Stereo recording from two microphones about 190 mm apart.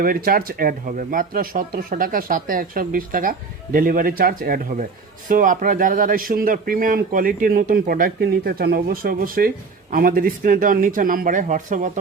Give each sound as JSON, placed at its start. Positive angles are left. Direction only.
{"t": 0.0, "sound": "speech", "side_deg": -50}